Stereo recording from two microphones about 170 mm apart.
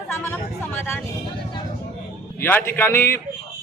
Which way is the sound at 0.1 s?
15° left (ahead or behind).